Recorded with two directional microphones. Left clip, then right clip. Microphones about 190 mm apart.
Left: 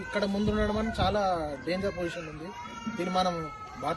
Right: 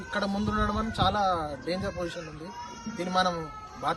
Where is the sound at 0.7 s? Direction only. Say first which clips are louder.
Right 1 dB; 30° right (ahead or behind).